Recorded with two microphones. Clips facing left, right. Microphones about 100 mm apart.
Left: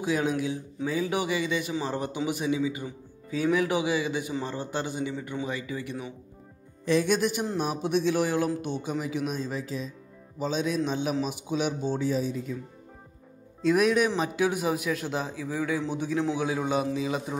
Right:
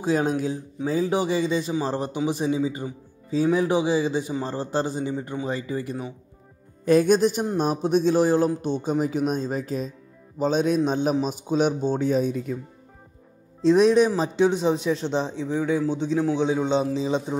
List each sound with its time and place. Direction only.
0.0 s speech: 35° right (ahead or behind)
8.5 s speech: 10° left (ahead or behind)
8.8 s speech: 45° right (ahead or behind)
13.6 s speech: 30° right (ahead or behind)